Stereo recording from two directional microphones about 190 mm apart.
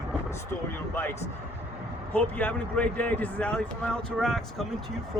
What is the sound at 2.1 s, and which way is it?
Speech, 10° left (ahead or behind).